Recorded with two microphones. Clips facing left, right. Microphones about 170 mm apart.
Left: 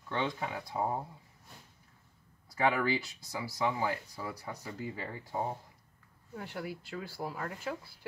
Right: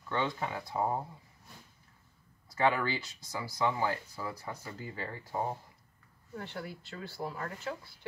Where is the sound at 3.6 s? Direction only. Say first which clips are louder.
Right 1 dB; 10° left (ahead or behind).